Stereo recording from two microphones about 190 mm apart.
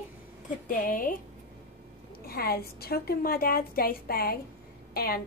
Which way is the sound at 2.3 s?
55° left (ahead or behind).